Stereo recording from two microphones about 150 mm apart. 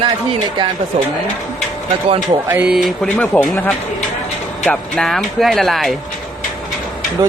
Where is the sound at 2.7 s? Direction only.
5° left (ahead or behind).